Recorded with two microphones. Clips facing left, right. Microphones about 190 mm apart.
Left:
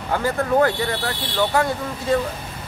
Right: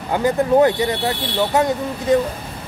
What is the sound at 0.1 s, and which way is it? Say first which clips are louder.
Speech: right 4 dB; 20° right (ahead or behind).